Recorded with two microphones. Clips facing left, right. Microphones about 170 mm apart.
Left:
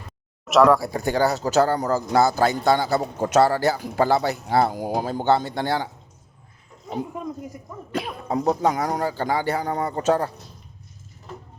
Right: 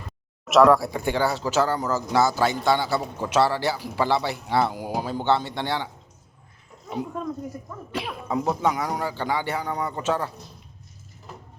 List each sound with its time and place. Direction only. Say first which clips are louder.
0.4 s speech: even; centre (ahead or behind)
0.9 s a man's voice: left 3 dB; 40° left (ahead or behind)
7.9 s a man's voice: left 2 dB; 40° left (ahead or behind)